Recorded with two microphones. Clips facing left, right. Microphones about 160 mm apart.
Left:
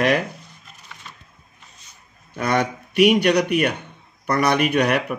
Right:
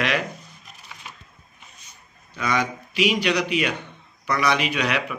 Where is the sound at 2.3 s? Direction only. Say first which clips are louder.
Left 3 dB; 60° left (ahead or behind).